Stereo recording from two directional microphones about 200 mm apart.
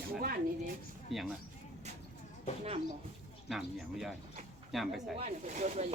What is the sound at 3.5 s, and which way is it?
Speech, centre (ahead or behind).